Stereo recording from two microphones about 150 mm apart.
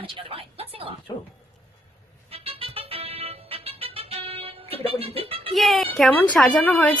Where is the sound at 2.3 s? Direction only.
40° right (ahead or behind).